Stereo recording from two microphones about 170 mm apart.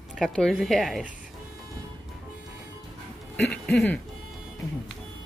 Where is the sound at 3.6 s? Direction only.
5° left (ahead or behind).